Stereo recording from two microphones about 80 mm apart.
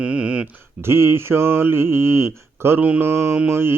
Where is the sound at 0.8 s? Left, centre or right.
Right.